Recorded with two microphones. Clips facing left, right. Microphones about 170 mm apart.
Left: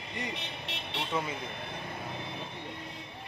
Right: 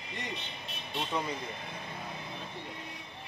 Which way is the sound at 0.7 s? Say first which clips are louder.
Left 4 dB; 70° left (ahead or behind).